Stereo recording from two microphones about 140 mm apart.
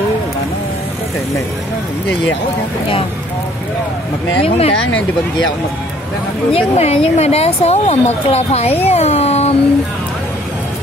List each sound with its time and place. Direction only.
4.5 s a woman's voice: 45° left (ahead or behind)
6.5 s a woman's voice: 45° left (ahead or behind)